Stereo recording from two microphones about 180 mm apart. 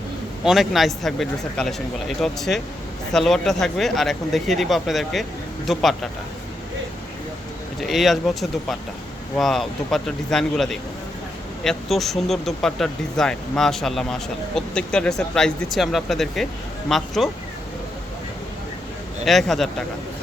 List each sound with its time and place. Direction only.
0.4 s speech: centre (ahead or behind)
7.8 s speech: centre (ahead or behind)
19.2 s speech: centre (ahead or behind)